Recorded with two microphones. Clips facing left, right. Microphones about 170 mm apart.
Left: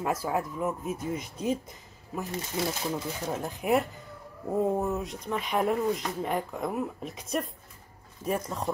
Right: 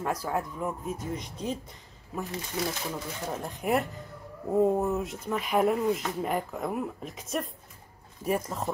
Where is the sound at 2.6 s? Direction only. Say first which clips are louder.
Left 1 dB; 25° left (ahead or behind).